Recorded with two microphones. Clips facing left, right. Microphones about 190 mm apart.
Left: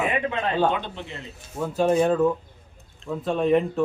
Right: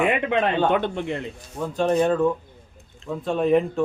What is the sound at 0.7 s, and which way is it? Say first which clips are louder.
Speech: right 6 dB; 55° right (ahead or behind).